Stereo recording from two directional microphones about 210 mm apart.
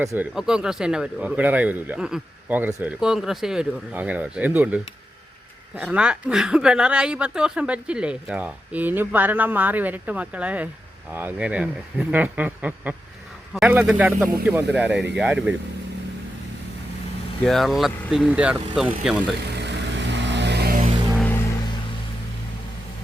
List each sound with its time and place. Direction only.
0.0 s speech: 15° right (ahead or behind)
0.3 s speech: 5° right (ahead or behind)
17.4 s speech: centre (ahead or behind)
19.5 s vehicle: 55° right (ahead or behind)